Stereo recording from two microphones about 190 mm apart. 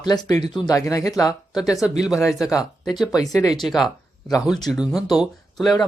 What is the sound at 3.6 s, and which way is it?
Speech, centre (ahead or behind).